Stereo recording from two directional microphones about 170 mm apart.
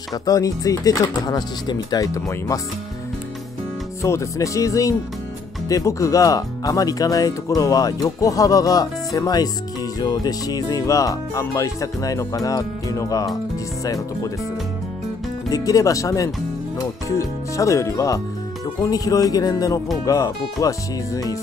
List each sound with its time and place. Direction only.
0.1 s speech: 20° left (ahead or behind)
4.0 s speech: 15° left (ahead or behind)
15.5 s speech: 20° left (ahead or behind)